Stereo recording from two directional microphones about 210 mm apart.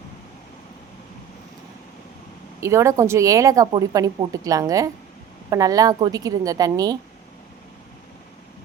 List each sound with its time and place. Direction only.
2.6 s speech: 15° right (ahead or behind)